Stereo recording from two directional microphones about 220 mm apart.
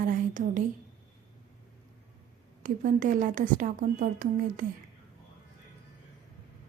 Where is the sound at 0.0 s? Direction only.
35° right (ahead or behind).